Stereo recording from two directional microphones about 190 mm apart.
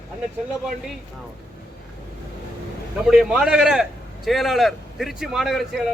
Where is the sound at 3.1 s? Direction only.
5° right (ahead or behind).